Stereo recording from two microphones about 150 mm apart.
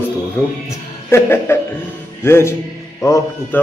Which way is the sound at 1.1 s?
15° left (ahead or behind).